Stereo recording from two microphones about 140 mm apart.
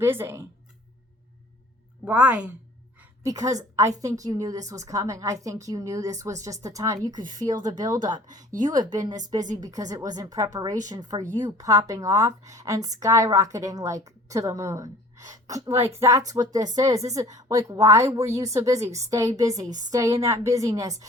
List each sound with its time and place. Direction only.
0.0 s a woman's voice: 15° right (ahead or behind)
2.0 s a woman's voice: 10° right (ahead or behind)
3.2 s a woman's voice: 25° right (ahead or behind)